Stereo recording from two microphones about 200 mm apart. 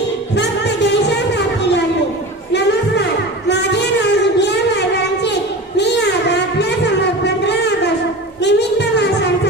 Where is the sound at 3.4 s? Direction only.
60° left (ahead or behind).